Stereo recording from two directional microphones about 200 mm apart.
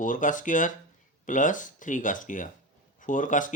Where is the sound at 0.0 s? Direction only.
40° left (ahead or behind).